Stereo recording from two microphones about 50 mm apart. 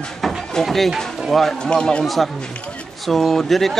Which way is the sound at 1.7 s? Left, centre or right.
Centre.